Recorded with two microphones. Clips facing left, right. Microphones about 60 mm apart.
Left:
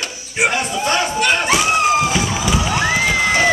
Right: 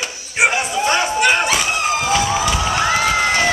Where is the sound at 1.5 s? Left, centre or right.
Centre.